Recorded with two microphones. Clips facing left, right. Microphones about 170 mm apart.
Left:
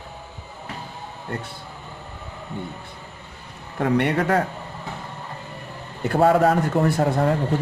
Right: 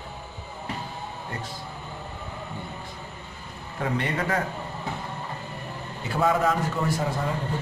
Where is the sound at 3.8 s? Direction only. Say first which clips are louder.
Left 7 dB; 65° left (ahead or behind).